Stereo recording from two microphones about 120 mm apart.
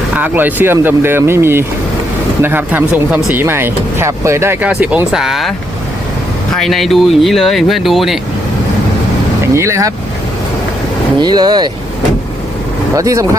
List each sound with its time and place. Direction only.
0.2 s speech: 15° right (ahead or behind)
6.6 s speech: centre (ahead or behind)
9.6 s speech: 25° right (ahead or behind)
11.2 s speech: 35° right (ahead or behind)
13.0 s speech: 30° right (ahead or behind)